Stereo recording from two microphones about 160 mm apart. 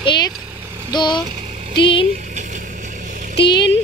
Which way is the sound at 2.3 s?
50° right (ahead or behind).